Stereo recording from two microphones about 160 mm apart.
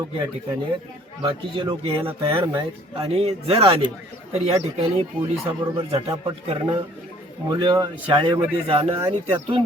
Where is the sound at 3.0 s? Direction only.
40° right (ahead or behind).